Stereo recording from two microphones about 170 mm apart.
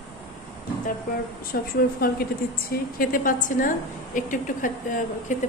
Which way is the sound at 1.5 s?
70° left (ahead or behind).